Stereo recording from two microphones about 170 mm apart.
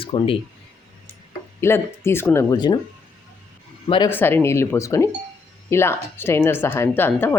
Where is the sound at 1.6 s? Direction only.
15° left (ahead or behind).